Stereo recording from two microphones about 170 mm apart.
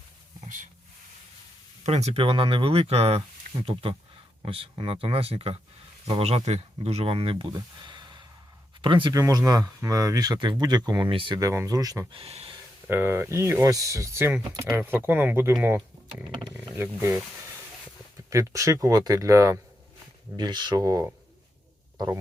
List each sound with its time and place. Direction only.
0.4 s a sound: 45° right (ahead or behind)
1.8 s speech: 40° right (ahead or behind); by 12.0 s 20° right (ahead or behind)
12.1 s speech: 35° right (ahead or behind)
12.9 s speech: 15° right (ahead or behind)
18.3 s speech: 20° right (ahead or behind)